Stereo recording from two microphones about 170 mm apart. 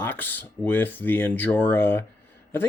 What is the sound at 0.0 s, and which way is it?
Speech, 10° left (ahead or behind).